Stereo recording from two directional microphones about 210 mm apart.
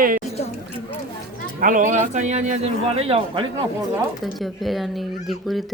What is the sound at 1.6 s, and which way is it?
A man's voice, 40° right (ahead or behind).